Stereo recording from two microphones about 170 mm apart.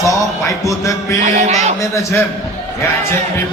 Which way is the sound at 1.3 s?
40° right (ahead or behind).